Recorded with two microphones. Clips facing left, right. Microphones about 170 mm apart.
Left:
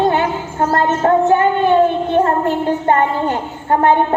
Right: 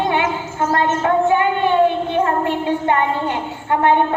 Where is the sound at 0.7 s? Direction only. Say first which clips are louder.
Left 3 dB; 40° left (ahead or behind).